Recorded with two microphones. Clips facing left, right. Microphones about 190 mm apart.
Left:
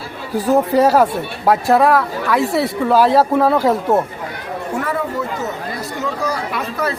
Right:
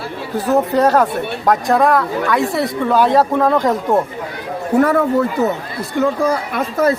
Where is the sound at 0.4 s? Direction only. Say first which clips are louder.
Left 1 dB; 10° left (ahead or behind).